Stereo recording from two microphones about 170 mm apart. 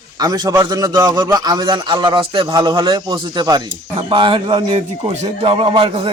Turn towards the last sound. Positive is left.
turn(degrees=-30)  # may be behind; listen again after turning